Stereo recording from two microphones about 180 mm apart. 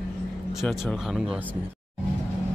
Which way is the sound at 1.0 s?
5° right (ahead or behind).